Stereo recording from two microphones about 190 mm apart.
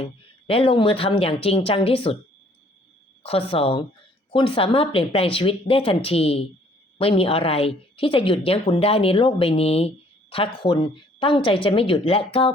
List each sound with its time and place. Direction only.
0.0 s a woman's voice: 30° left (ahead or behind)
3.2 s a woman's voice: 30° left (ahead or behind)